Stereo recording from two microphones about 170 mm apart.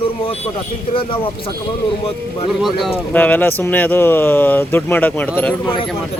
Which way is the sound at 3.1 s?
10° left (ahead or behind).